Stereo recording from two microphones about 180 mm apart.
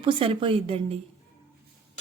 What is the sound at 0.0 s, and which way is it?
Speech, 25° right (ahead or behind).